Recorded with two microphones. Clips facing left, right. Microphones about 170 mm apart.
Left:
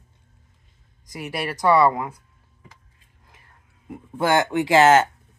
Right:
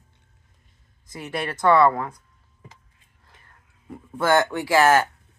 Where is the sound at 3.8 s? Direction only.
15° left (ahead or behind).